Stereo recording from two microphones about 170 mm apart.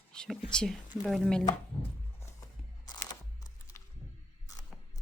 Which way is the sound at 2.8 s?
25° left (ahead or behind).